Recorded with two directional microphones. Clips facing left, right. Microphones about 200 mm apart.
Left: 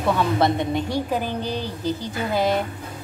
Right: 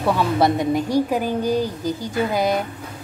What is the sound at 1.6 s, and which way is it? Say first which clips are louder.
A woman's voice: right 4 dB; 10° right (ahead or behind).